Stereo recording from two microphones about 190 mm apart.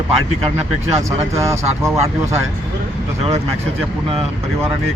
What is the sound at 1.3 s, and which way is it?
Speech, 15° right (ahead or behind).